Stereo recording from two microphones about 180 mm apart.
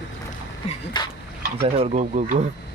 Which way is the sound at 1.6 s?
30° right (ahead or behind).